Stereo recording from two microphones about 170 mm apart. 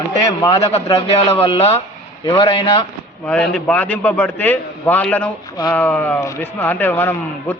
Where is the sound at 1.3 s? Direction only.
35° left (ahead or behind).